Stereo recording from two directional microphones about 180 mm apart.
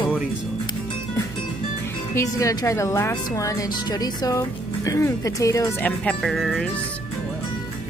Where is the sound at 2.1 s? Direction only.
15° left (ahead or behind); by 6.7 s centre (ahead or behind).